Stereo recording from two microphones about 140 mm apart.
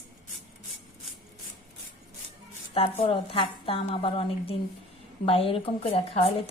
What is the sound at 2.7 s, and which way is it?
A woman's voice, 45° left (ahead or behind).